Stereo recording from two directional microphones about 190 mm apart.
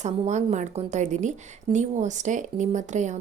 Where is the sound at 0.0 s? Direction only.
40° right (ahead or behind).